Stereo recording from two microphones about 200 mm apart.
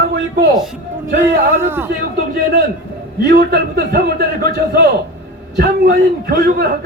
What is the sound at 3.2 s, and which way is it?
A man's voice, 50° right (ahead or behind).